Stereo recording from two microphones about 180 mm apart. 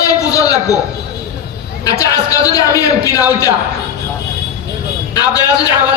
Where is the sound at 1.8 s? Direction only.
20° left (ahead or behind).